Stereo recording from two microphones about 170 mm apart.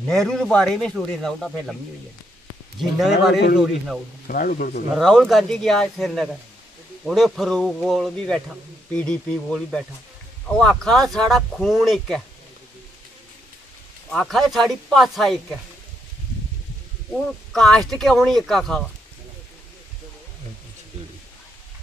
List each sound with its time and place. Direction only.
0.1 s a man's voice: centre (ahead or behind)
2.8 s a man's voice: centre (ahead or behind)
4.3 s speech: 55° left (ahead or behind)
4.9 s a man's voice: centre (ahead or behind)
14.1 s a man's voice: centre (ahead or behind)
17.5 s a man's voice: 5° left (ahead or behind)